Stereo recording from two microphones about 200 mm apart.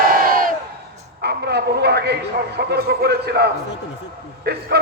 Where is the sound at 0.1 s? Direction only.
45° right (ahead or behind).